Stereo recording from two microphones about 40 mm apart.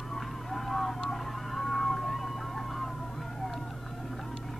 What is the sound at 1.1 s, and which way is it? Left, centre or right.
Vehicle, centre.